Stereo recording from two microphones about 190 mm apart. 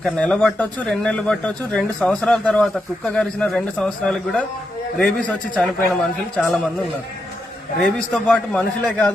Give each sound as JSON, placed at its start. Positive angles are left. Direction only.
{"t": 0.0, "sound": "speech", "side_deg": 5}
{"t": 7.8, "sound": "speech", "side_deg": 0}